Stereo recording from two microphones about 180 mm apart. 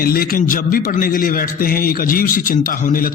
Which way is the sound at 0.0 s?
55° left (ahead or behind).